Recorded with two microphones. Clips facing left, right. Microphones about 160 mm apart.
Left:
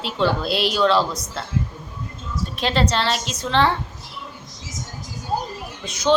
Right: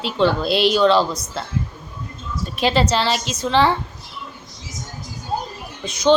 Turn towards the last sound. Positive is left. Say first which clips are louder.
# right 4 dB
turn(degrees=0)  # may be behind; listen again after turning